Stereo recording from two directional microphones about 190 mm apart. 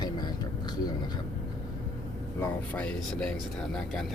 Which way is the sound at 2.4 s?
5° left (ahead or behind).